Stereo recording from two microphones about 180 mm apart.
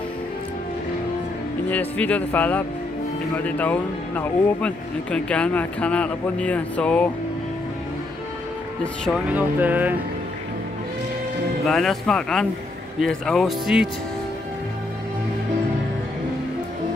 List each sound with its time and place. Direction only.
1.7 s speech: 10° left (ahead or behind)
9.3 s music: 10° right (ahead or behind)
11.6 s speech: centre (ahead or behind)